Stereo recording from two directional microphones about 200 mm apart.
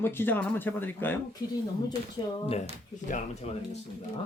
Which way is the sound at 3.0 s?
35° left (ahead or behind).